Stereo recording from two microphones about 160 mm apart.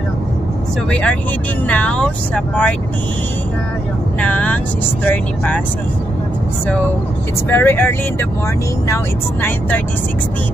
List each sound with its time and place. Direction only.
0.8 s speech: 5° left (ahead or behind)
4.2 s speech: 10° left (ahead or behind)
7.4 s speech: 15° left (ahead or behind)